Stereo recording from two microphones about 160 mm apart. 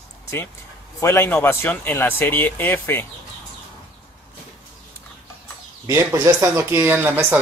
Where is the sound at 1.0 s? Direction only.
15° left (ahead or behind).